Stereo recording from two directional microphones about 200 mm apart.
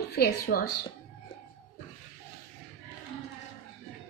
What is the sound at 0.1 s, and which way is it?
Speech, 50° left (ahead or behind).